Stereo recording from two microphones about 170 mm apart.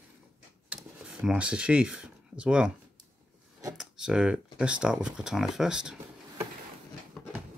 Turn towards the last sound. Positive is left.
turn(degrees=0)  # may be behind; listen again after turning